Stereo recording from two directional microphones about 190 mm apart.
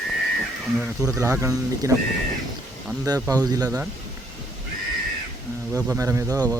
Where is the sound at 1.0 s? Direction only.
15° right (ahead or behind).